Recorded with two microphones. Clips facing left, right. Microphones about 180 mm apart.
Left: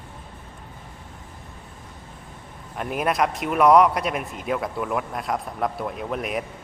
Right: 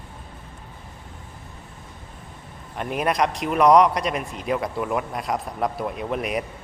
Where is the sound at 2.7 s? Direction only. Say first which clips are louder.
Right 1 dB; centre (ahead or behind).